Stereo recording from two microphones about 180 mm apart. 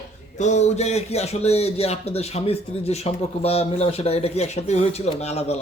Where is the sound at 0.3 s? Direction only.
40° left (ahead or behind).